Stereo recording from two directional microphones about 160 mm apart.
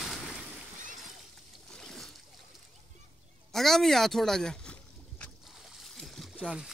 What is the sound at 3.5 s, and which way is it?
Speech, centre (ahead or behind).